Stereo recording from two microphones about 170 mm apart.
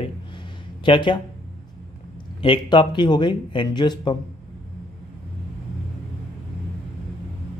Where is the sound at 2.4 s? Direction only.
30° left (ahead or behind).